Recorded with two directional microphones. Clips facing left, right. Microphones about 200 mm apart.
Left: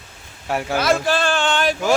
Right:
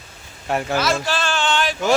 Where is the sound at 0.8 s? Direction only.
55° left (ahead or behind).